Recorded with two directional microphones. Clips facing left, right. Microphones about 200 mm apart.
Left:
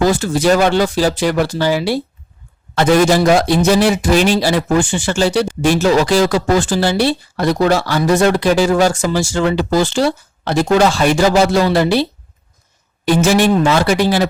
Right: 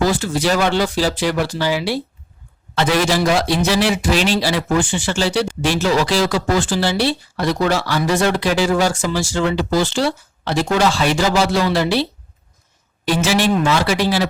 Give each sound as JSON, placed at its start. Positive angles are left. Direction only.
{"t": 0.0, "sound": "speech", "side_deg": 45}
{"t": 13.1, "sound": "speech", "side_deg": 50}